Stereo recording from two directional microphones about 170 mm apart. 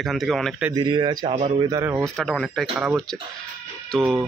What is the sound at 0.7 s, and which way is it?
Speech, 25° right (ahead or behind).